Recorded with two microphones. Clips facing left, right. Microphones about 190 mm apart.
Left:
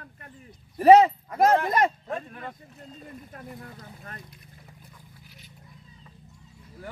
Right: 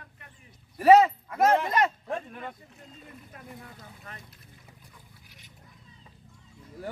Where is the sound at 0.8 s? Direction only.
35° left (ahead or behind).